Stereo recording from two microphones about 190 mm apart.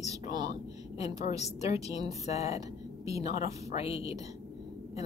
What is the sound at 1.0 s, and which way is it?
Speech, 35° left (ahead or behind).